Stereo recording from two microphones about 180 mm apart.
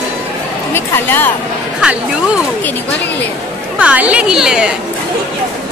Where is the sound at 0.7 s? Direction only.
10° left (ahead or behind).